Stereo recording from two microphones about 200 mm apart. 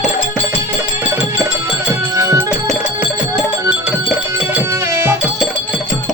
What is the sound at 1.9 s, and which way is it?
Music, 15° right (ahead or behind).